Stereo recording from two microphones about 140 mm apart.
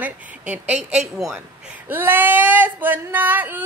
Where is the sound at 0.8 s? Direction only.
50° right (ahead or behind).